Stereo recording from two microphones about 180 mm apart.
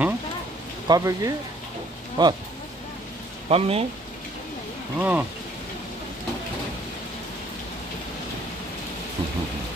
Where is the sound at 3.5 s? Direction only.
35° right (ahead or behind).